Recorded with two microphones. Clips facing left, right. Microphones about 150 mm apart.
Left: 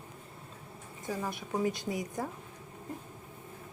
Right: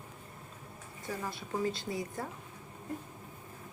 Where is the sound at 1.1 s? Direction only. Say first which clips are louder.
Left 3 dB; 15° left (ahead or behind).